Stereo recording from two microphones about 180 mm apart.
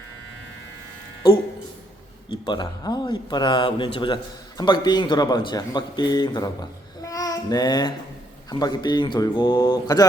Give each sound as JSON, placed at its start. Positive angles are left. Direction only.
{"t": 2.5, "sound": "a man's voice", "side_deg": 25}